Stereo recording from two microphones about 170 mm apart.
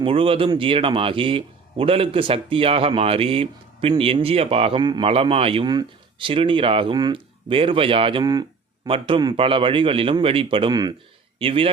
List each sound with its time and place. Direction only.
0.0 s a man's voice: 30° right (ahead or behind)